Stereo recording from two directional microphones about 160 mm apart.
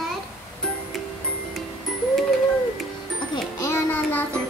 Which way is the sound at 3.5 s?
20° left (ahead or behind).